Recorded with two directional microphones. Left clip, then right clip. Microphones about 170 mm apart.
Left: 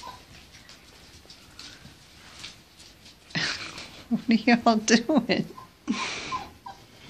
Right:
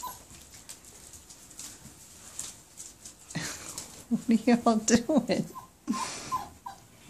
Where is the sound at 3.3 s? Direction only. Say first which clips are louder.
Left 9 dB; 15° right (ahead or behind).